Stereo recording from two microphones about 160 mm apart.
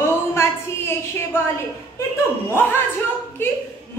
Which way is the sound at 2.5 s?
15° left (ahead or behind).